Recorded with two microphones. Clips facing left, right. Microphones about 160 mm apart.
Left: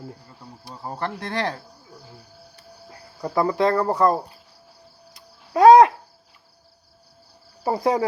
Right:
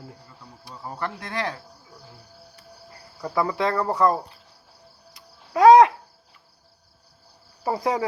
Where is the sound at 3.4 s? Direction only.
35° left (ahead or behind).